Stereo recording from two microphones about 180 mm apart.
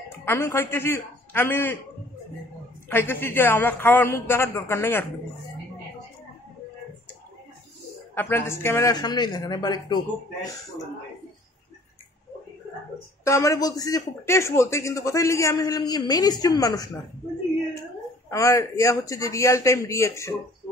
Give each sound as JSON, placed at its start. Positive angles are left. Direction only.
{"t": 0.2, "sound": "a man's voice", "side_deg": 15}
{"t": 2.9, "sound": "a man's voice", "side_deg": 10}
{"t": 8.1, "sound": "a man's voice", "side_deg": 10}
{"t": 13.2, "sound": "a man's voice", "side_deg": 15}
{"t": 18.3, "sound": "a man's voice", "side_deg": 15}